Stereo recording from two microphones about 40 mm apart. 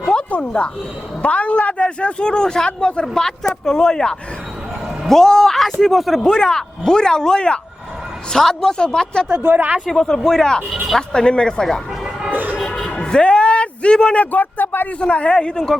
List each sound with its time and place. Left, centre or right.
0.3 s a man's voice: left; by 6.3 s centre
6.3 s speech: centre
8.3 s a man's voice: centre
9.5 s speech: right
9.8 s a man's voice: centre
12.3 s music: right
12.5 s a sound: centre
12.9 s a sound: left
14.2 s speech: left
15.1 s a man's voice: left